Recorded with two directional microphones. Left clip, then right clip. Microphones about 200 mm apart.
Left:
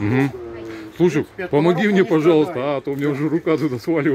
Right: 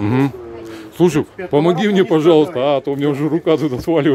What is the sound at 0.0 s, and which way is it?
Speech, 10° right (ahead or behind).